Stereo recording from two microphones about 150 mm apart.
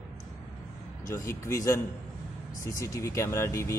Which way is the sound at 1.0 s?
20° left (ahead or behind).